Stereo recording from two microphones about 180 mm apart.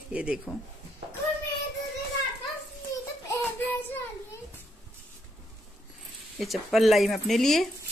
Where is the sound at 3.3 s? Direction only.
10° left (ahead or behind).